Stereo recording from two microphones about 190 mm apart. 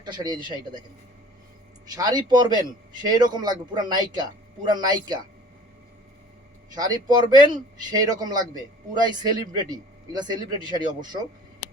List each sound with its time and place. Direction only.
0.0 s a man's voice: 25° right (ahead or behind)
2.0 s a man's voice: 20° right (ahead or behind)
6.7 s a man's voice: 20° right (ahead or behind)